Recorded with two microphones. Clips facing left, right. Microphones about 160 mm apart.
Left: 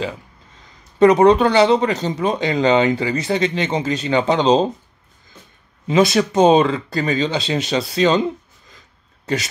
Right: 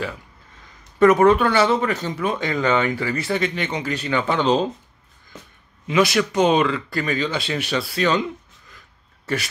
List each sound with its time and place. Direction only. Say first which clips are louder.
0.9 s speech: left 3 dB; 20° left (ahead or behind)
5.9 s speech: left 3 dB; 30° left (ahead or behind)